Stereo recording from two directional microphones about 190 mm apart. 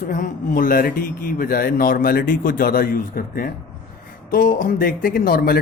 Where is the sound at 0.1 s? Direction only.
45° left (ahead or behind).